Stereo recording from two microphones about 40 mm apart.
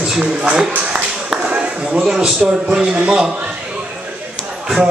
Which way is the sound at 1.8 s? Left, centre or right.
Centre.